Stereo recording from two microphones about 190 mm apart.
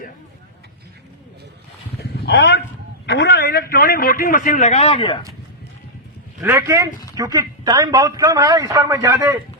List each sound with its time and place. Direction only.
2.0 s a sound: 60° left (ahead or behind)
3.1 s a man's voice: 60° left (ahead or behind); by 5.2 s 25° left (ahead or behind)
6.4 s a man's voice: 15° right (ahead or behind)